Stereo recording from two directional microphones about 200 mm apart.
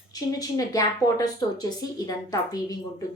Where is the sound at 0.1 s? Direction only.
20° left (ahead or behind).